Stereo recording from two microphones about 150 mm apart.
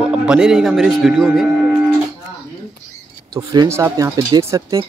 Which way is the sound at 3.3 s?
25° right (ahead or behind).